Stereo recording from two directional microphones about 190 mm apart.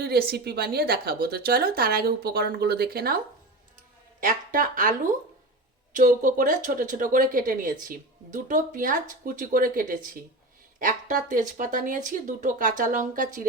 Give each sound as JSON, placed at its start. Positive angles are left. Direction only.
{"t": 0.0, "sound": "speech", "side_deg": -55}
{"t": 4.2, "sound": "speech", "side_deg": -45}